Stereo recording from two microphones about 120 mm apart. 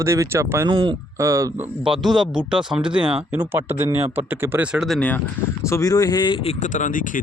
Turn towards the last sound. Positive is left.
turn(degrees=90)